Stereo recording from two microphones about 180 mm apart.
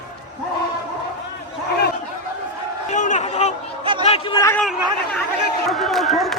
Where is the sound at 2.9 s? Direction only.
45° left (ahead or behind).